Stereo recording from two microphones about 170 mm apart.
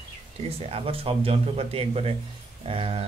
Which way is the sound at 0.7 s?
35° right (ahead or behind).